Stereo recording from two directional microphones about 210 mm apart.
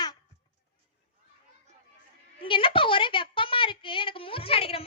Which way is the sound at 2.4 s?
25° left (ahead or behind).